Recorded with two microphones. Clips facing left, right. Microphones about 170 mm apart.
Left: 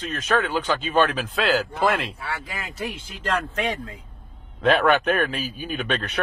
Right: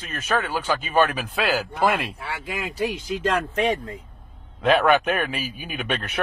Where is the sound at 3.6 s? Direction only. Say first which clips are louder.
Right 4 dB; 30° right (ahead or behind).